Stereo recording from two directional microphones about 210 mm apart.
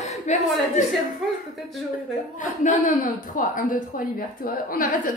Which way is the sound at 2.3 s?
35° left (ahead or behind).